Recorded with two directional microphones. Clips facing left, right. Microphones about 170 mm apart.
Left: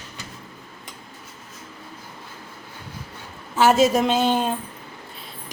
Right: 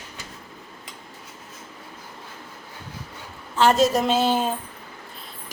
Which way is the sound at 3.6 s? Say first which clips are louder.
Left 2 dB; 5° left (ahead or behind).